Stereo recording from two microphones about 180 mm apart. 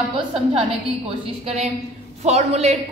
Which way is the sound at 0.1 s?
30° right (ahead or behind).